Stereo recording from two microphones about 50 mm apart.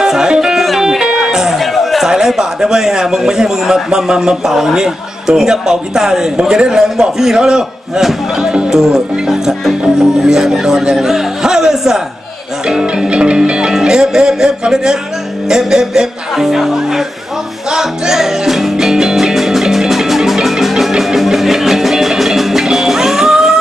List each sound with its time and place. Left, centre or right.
0.0 s music: centre
1.6 s chatter: centre
2.0 s speech: centre
10.2 s speech: centre
17.6 s music: centre